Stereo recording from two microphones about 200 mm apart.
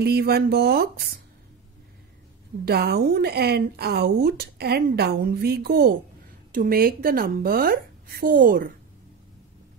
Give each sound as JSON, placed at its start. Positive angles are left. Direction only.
{"t": 0.0, "sound": "speech", "side_deg": -50}
{"t": 2.6, "sound": "speech", "side_deg": -55}